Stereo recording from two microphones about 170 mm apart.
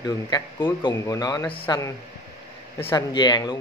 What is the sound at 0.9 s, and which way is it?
Speech, 15° left (ahead or behind).